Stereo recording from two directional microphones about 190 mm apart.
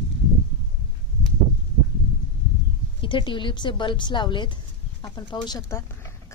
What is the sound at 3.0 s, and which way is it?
A woman's voice, 25° left (ahead or behind).